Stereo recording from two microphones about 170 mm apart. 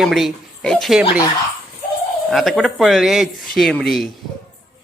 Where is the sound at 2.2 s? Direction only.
Centre (ahead or behind).